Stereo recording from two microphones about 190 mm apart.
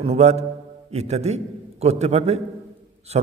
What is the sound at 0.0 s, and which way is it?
A man's voice, 35° right (ahead or behind).